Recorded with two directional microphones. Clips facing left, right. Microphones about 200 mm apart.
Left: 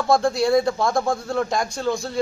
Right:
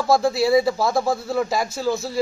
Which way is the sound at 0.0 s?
5° right (ahead or behind).